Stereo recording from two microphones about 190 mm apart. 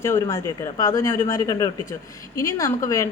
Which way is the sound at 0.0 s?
15° left (ahead or behind).